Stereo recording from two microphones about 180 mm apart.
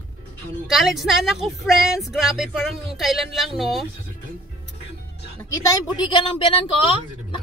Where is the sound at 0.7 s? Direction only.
Centre (ahead or behind).